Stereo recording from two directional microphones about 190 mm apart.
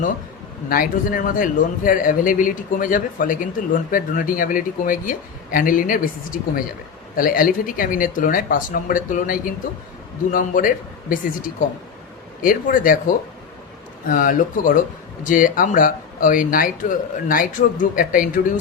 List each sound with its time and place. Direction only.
0.7 s speech: 45° left (ahead or behind)